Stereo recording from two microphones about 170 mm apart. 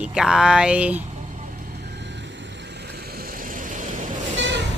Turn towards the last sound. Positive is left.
turn(degrees=-90)